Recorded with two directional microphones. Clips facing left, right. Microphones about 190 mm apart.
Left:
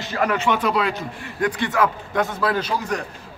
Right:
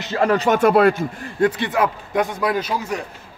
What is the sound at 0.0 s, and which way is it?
Speech, 25° right (ahead or behind).